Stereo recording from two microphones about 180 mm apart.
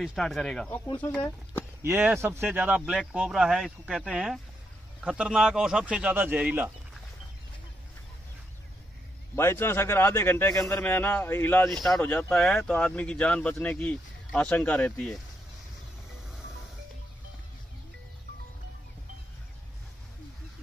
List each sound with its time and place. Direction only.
0.0 s speech: centre (ahead or behind)
0.8 s speech: 25° left (ahead or behind)
1.1 s speech: 10° left (ahead or behind)
1.8 s speech: 10° right (ahead or behind)
9.3 s a man's voice: 15° left (ahead or behind)